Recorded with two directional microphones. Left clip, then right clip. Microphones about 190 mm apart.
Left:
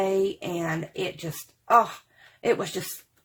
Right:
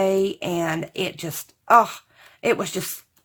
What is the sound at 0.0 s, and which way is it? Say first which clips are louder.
Speech: right 4 dB; 30° right (ahead or behind).